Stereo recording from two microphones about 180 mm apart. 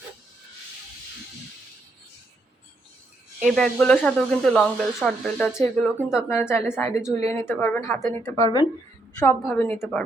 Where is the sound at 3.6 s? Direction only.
10° left (ahead or behind).